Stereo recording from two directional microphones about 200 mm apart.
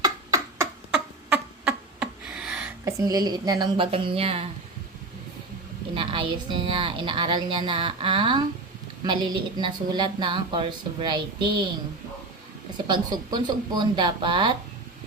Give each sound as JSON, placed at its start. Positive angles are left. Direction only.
{"t": 0.0, "sound": "beatboxing", "side_deg": -15}
{"t": 1.3, "sound": "a sound", "side_deg": -5}
{"t": 2.8, "sound": "a woman's voice", "side_deg": -15}
{"t": 5.9, "sound": "a woman's voice", "side_deg": -25}
{"t": 12.9, "sound": "a woman's voice", "side_deg": -20}